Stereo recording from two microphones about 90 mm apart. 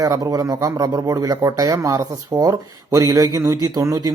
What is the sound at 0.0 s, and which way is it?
A man's voice, 45° right (ahead or behind).